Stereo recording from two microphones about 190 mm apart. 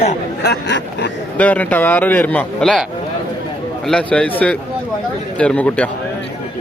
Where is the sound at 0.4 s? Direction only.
65° left (ahead or behind).